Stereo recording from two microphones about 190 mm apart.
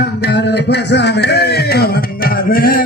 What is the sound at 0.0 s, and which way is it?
Speech, 60° left (ahead or behind).